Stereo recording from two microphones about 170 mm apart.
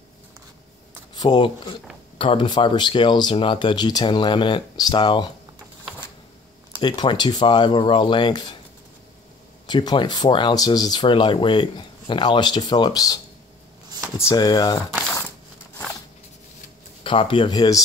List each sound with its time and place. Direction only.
1.1 s speech: 25° left (ahead or behind)
6.8 s speech: 25° left (ahead or behind)
9.7 s speech: 25° left (ahead or behind)
14.3 s speech: 25° left (ahead or behind)
17.0 s speech: 30° left (ahead or behind)